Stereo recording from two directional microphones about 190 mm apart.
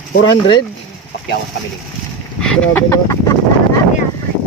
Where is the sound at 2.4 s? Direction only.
5° left (ahead or behind).